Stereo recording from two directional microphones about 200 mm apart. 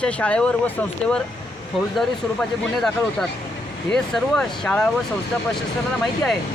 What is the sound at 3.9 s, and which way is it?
Speech, centre (ahead or behind).